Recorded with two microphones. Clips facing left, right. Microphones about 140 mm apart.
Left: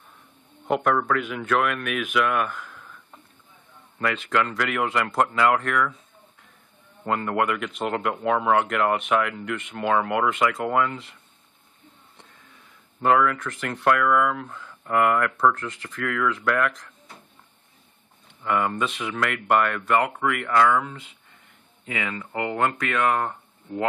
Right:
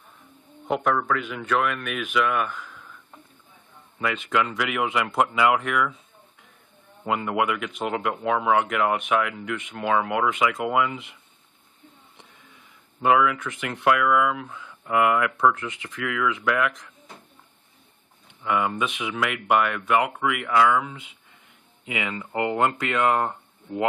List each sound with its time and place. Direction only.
0.7 s speech: centre (ahead or behind)
7.1 s speech: 5° right (ahead or behind)
13.0 s speech: 5° right (ahead or behind)
18.4 s speech: centre (ahead or behind)
21.8 s speech: 15° right (ahead or behind)